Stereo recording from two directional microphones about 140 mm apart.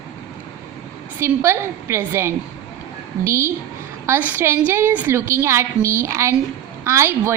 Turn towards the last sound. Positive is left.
turn(degrees=-20)  # may be behind; listen again after turning